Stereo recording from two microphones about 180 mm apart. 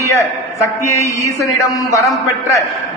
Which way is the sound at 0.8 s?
15° left (ahead or behind).